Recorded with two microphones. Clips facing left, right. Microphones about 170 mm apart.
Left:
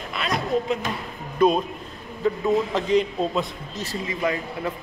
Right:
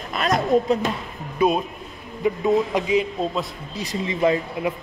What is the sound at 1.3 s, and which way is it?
A man's voice, 5° right (ahead or behind).